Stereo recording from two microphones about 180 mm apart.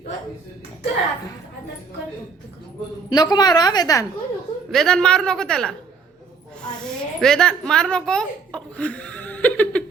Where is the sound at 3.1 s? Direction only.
25° left (ahead or behind).